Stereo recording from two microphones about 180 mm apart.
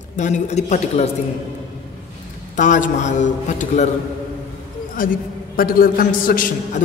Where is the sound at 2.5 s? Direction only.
45° left (ahead or behind).